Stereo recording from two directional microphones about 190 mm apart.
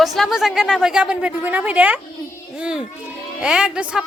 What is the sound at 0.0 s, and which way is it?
A woman's voice, centre (ahead or behind).